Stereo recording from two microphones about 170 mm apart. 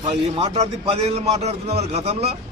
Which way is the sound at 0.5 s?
35° right (ahead or behind).